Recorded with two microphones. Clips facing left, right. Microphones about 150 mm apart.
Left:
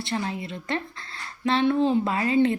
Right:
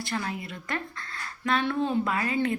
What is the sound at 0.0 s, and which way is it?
Speech, 25° left (ahead or behind).